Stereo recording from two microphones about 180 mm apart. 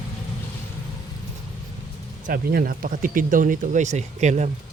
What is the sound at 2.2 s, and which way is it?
Speech, 55° right (ahead or behind).